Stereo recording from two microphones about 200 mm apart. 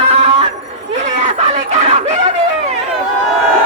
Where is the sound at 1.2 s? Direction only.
35° right (ahead or behind).